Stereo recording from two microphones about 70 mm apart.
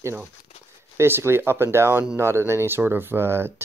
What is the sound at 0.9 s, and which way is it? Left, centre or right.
Speech, right.